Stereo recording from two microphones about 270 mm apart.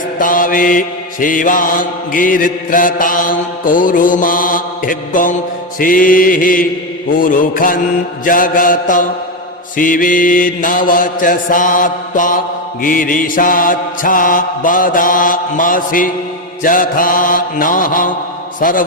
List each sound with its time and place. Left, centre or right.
0.2 s mantra: left